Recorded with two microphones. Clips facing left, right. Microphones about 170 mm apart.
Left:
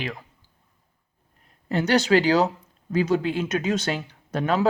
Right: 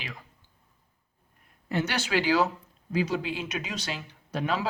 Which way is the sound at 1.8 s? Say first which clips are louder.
Left 9 dB; 40° left (ahead or behind).